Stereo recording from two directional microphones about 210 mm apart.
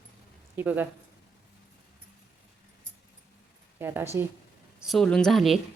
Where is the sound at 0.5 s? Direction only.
10° right (ahead or behind).